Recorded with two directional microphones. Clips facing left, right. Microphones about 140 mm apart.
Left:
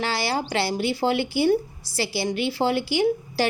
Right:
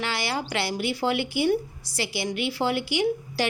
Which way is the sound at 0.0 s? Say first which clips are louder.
Left 3 dB; 35° left (ahead or behind).